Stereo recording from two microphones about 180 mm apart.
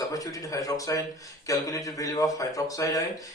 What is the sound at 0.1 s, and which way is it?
A man's voice, 20° left (ahead or behind).